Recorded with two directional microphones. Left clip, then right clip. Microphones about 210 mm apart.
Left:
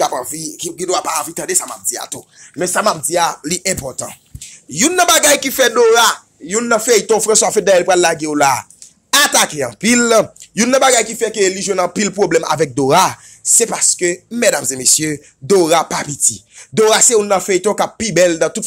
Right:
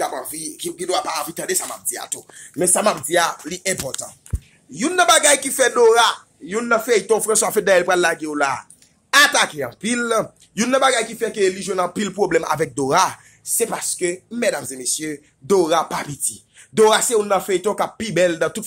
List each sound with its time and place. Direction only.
0.0 s a sound: 25° left (ahead or behind)
0.6 s a man's voice: 25° left (ahead or behind)
2.6 s speech: 5° right (ahead or behind)
3.2 s speech: 20° left (ahead or behind)
3.6 s a man's voice: 35° left (ahead or behind)